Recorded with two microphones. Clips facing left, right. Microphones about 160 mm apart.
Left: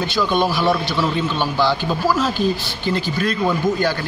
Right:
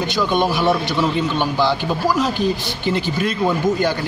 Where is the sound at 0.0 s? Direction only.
15° right (ahead or behind).